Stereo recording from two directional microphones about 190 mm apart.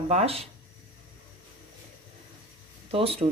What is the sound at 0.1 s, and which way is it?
Speech, 30° right (ahead or behind).